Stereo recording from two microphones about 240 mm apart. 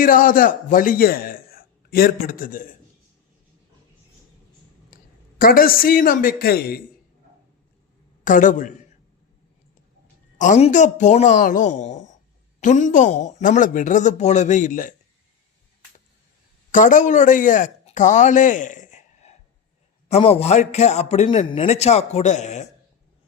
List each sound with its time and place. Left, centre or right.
0.0 s a man's voice: left
4.9 s a sound: left
5.4 s a man's voice: left
8.2 s a man's voice: left
10.3 s a man's voice: left
16.7 s a man's voice: left